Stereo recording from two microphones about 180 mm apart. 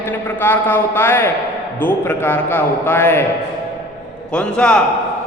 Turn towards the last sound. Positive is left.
turn(degrees=5)  # may be behind; listen again after turning